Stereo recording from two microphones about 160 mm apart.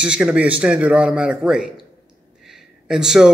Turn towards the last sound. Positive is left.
turn(degrees=-5)  # may be behind; listen again after turning